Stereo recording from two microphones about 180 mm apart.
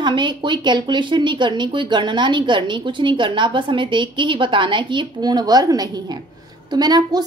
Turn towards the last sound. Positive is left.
turn(degrees=-20)  # may be behind; listen again after turning